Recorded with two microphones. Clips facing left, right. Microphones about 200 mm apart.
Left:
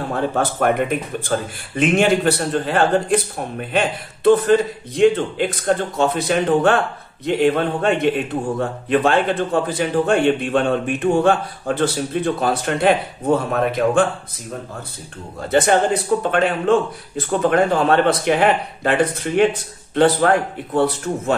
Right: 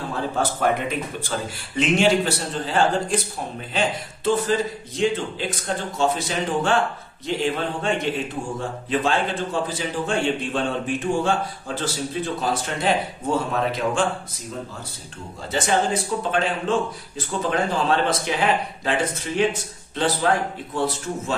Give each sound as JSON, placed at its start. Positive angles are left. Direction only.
{"t": 0.1, "sound": "a man's voice", "side_deg": 60}
{"t": 15.5, "sound": "a man's voice", "side_deg": 60}